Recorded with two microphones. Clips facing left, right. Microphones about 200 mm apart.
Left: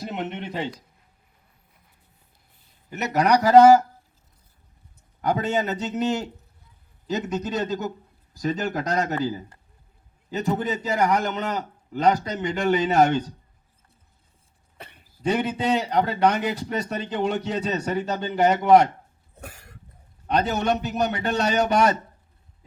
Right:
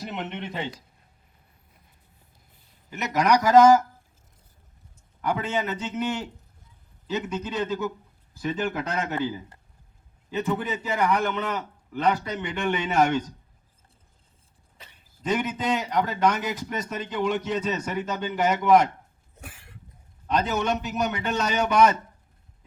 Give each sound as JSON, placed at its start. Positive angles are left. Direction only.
{"t": 0.3, "sound": "speech", "side_deg": 40}
{"t": 2.9, "sound": "speech", "side_deg": 35}
{"t": 5.2, "sound": "speech", "side_deg": 40}
{"t": 14.8, "sound": "a sound", "side_deg": 60}
{"t": 15.3, "sound": "speech", "side_deg": 35}
{"t": 19.4, "sound": "cough", "side_deg": 40}
{"t": 20.3, "sound": "speech", "side_deg": 35}